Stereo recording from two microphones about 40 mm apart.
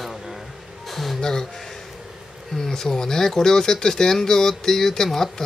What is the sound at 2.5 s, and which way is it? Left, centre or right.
Speech, centre.